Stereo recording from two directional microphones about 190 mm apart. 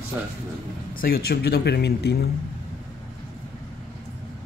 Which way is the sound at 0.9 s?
55° left (ahead or behind).